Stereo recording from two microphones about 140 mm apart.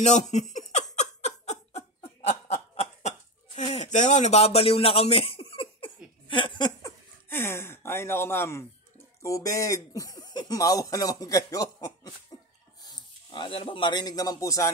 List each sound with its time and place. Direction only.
0.0 s speech: 55° left (ahead or behind)
0.9 s laughter: 55° left (ahead or behind)
6.2 s a sound: 35° left (ahead or behind)
7.2 s speech: 15° left (ahead or behind)
12.3 s cough: 25° left (ahead or behind)
12.8 s speech: 35° left (ahead or behind)